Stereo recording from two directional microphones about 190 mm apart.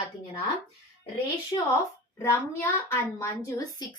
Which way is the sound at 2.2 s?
15° left (ahead or behind).